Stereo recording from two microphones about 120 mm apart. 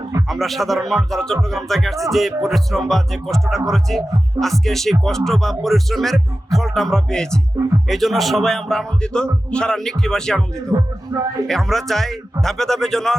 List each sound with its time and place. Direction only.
0.3 s speech: centre (ahead or behind)
10.7 s music: 30° right (ahead or behind)
11.4 s speech: 5° left (ahead or behind)